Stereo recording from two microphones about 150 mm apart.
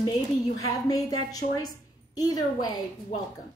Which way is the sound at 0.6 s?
25° left (ahead or behind).